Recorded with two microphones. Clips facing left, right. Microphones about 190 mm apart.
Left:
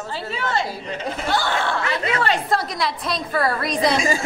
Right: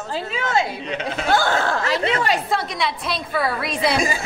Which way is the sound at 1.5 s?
40° right (ahead or behind).